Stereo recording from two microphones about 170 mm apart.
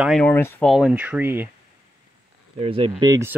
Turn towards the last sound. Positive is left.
turn(degrees=-15)  # may be behind; listen again after turning